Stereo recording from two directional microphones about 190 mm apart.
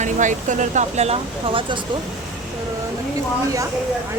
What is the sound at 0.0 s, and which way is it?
Speech, 40° right (ahead or behind).